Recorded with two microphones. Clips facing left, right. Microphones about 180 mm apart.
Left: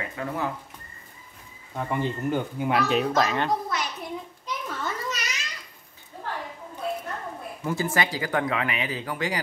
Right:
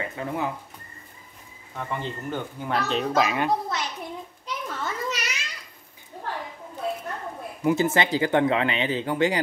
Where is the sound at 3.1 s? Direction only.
10° right (ahead or behind).